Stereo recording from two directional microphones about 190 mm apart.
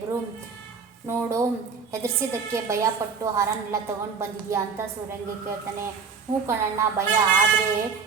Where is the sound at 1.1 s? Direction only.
15° right (ahead or behind).